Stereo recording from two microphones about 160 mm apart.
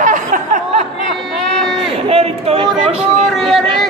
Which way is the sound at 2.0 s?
40° right (ahead or behind).